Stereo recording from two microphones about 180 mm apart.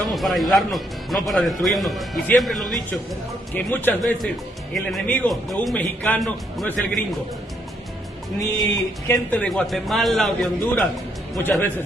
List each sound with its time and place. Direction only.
0.0 s a man's voice: centre (ahead or behind)
8.4 s a sound: 20° left (ahead or behind)
9.3 s speech: 5° left (ahead or behind)